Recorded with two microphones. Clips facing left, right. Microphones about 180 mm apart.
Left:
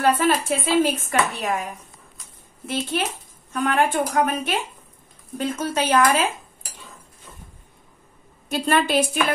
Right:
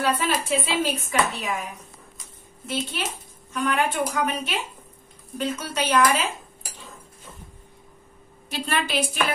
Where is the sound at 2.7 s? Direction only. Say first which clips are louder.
Left 4 dB; 55° left (ahead or behind).